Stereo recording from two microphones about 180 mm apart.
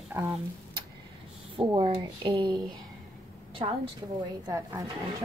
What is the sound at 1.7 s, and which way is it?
Speech, 25° right (ahead or behind).